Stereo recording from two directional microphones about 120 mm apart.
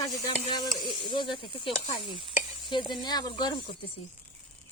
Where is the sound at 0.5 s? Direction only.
40° left (ahead or behind).